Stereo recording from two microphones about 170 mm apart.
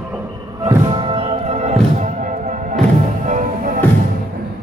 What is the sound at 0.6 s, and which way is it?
Music, 25° right (ahead or behind).